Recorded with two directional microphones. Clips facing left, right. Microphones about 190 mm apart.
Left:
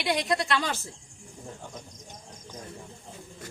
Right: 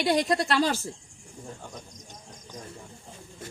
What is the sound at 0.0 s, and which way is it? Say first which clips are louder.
Speech: right 3 dB; 35° right (ahead or behind).